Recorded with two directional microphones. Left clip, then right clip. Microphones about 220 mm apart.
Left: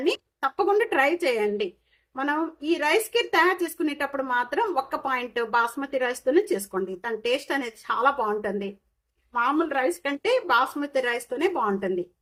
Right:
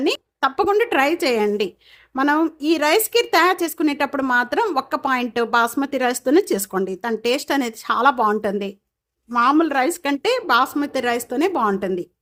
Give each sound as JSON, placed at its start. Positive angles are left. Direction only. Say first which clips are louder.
{"t": 0.0, "sound": "a woman's voice", "louder": "right 5 dB", "side_deg": -50}